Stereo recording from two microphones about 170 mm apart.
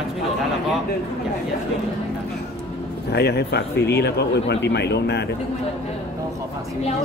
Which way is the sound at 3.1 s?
70° left (ahead or behind).